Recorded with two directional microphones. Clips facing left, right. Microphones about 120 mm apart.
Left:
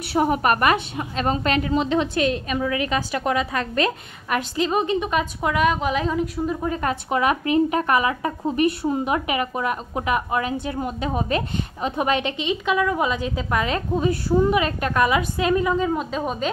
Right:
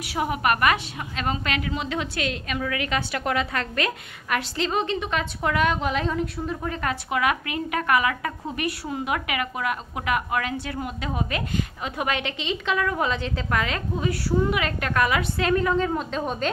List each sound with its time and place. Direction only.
0.1 s a woman's voice: 35° left (ahead or behind); by 16.4 s 5° left (ahead or behind)